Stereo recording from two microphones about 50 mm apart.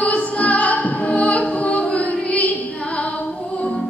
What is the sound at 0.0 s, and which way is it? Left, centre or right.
Music, left.